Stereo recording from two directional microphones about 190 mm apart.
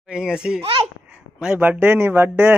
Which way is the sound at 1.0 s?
5° right (ahead or behind).